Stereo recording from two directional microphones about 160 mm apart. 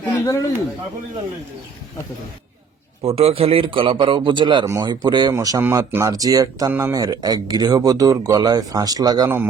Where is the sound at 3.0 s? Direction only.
35° right (ahead or behind).